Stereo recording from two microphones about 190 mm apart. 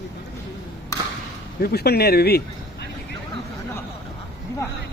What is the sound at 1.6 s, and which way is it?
Speech, 55° left (ahead or behind).